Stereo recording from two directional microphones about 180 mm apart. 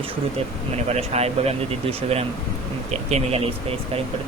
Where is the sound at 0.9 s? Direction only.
35° right (ahead or behind).